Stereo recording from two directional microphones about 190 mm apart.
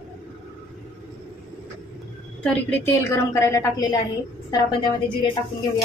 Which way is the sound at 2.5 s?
10° left (ahead or behind).